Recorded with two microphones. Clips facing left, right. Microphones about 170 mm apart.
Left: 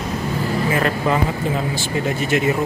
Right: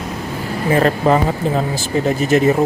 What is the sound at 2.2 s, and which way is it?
Speech, 40° right (ahead or behind).